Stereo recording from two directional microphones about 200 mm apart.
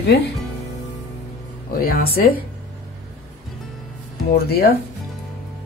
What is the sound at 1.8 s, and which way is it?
Speech, 45° left (ahead or behind).